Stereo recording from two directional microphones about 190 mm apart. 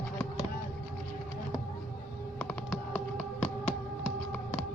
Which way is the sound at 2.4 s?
5° left (ahead or behind).